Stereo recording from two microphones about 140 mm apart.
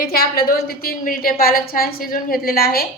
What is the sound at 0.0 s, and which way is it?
A woman's voice, 90° left.